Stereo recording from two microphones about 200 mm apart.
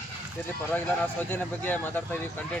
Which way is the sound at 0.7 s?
10° left (ahead or behind).